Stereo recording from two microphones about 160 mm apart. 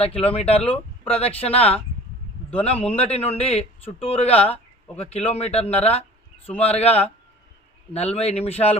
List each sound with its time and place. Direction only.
0.1 s speech: 10° left (ahead or behind)
0.3 s a man's voice: 35° left (ahead or behind)